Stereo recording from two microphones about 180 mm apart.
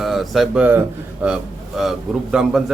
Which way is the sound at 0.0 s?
Centre (ahead or behind).